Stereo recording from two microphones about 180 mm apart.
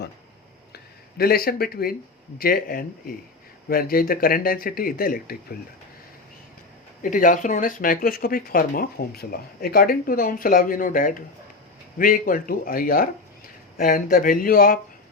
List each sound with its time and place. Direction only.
1.2 s speech: 55° left (ahead or behind)
7.0 s speech: 45° left (ahead or behind)